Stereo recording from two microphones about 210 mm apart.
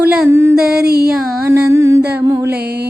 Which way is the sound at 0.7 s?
50° right (ahead or behind).